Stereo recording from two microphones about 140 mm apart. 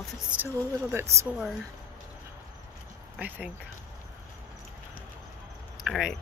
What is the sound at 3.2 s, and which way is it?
Speech, 10° right (ahead or behind).